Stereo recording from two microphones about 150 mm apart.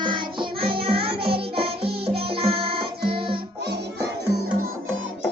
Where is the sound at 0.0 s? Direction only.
30° right (ahead or behind).